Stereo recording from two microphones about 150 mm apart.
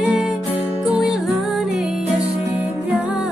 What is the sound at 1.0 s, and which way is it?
Music, centre (ahead or behind).